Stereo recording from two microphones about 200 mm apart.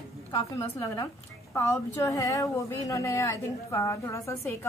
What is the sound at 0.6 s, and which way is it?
A woman's voice, 15° left (ahead or behind).